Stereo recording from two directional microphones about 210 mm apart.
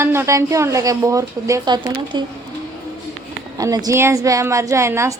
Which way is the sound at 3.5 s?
15° right (ahead or behind).